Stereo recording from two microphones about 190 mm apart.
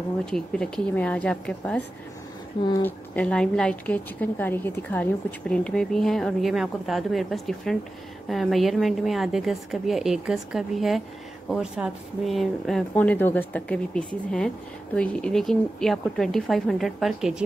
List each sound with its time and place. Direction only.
0.2 s a woman's voice: 5° left (ahead or behind)
2.8 s a woman's voice: 5° left (ahead or behind)